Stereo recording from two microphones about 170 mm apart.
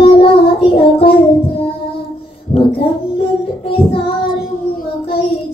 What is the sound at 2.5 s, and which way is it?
Child singing, 40° left (ahead or behind).